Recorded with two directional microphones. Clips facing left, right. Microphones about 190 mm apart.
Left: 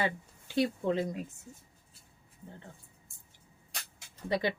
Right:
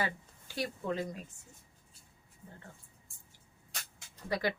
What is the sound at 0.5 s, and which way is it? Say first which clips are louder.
Speech: left 7 dB; 25° left (ahead or behind).